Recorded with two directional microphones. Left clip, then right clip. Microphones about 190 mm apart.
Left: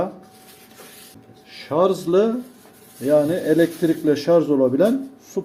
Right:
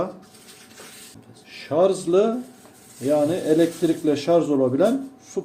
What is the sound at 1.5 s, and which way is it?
Speech, 20° left (ahead or behind).